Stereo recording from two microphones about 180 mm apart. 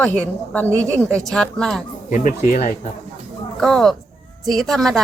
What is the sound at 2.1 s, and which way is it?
Speech, 40° left (ahead or behind).